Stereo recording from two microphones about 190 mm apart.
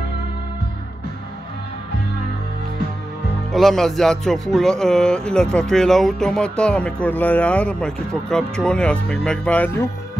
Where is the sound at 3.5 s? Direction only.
Centre (ahead or behind).